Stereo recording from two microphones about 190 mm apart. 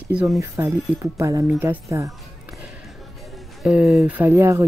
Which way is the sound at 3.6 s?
5° right (ahead or behind).